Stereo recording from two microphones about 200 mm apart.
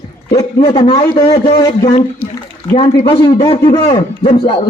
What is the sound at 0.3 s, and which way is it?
A man's voice, 20° left (ahead or behind).